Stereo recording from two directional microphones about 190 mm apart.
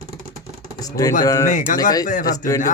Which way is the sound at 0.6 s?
20° left (ahead or behind).